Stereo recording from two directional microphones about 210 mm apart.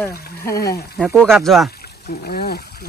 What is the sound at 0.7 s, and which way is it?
Speech, 50° left (ahead or behind).